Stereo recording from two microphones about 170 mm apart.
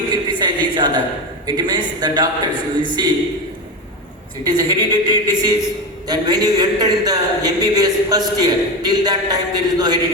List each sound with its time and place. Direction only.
0.1 s a sound: 25° right (ahead or behind)
1.5 s a man's voice: 25° right (ahead or behind)
4.4 s a man's voice: 25° right (ahead or behind)